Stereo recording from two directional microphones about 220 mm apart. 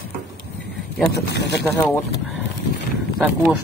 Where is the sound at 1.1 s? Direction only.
50° left (ahead or behind).